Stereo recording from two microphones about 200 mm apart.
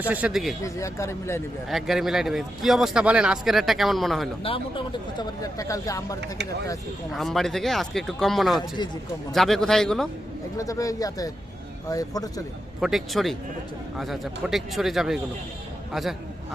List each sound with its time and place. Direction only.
0.1 s speech: 5° right (ahead or behind)
0.6 s speech: 15° left (ahead or behind)
1.7 s speech: centre (ahead or behind)
4.4 s speech: 25° left (ahead or behind)
7.1 s speech: centre (ahead or behind)
10.6 s speech: 15° left (ahead or behind)
12.8 s speech: centre (ahead or behind)